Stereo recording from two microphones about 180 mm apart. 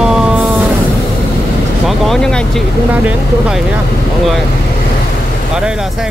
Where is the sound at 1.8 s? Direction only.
Centre (ahead or behind).